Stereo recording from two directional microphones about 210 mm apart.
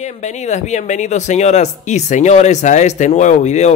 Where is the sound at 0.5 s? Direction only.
35° left (ahead or behind).